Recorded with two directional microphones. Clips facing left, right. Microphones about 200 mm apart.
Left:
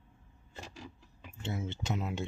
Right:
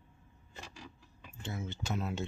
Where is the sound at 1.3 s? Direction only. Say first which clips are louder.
Left 3 dB; 25° left (ahead or behind).